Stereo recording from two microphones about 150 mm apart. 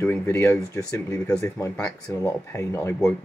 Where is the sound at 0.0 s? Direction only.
20° left (ahead or behind).